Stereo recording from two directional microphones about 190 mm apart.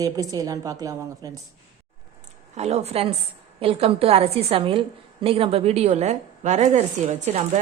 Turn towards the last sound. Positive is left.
turn(degrees=-35)  # may be behind; listen again after turning